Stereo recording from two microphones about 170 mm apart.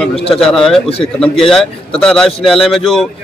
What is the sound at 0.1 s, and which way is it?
Speech, 35° left (ahead or behind).